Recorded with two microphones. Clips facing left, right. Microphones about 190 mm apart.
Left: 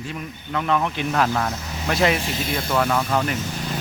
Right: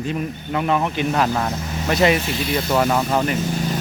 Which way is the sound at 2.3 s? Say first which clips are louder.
Right 3 dB; 45° left (ahead or behind).